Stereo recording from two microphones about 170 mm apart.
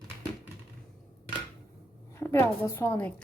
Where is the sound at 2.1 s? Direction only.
15° left (ahead or behind).